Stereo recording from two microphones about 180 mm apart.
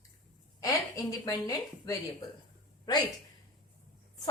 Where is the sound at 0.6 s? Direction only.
20° left (ahead or behind).